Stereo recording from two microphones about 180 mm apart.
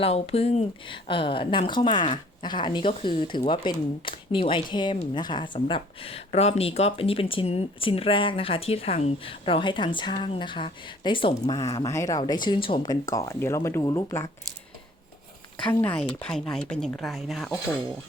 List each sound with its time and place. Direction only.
0.0 s speech: 35° left (ahead or behind); by 14.3 s 15° left (ahead or behind)
15.6 s speech: 10° left (ahead or behind)